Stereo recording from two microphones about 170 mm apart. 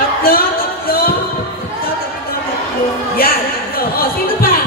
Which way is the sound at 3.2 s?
60° left (ahead or behind).